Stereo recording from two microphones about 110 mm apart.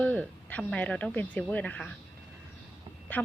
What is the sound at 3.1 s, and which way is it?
Speech, 15° left (ahead or behind).